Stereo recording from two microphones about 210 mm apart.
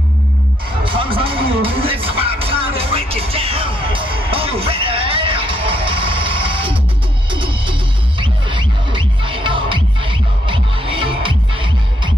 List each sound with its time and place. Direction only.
0.8 s music: 25° right (ahead or behind)